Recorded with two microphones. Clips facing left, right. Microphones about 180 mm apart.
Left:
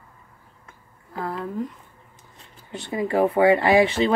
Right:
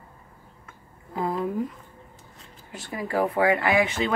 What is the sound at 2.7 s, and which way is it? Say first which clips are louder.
Speech: left 5 dB; 25° left (ahead or behind).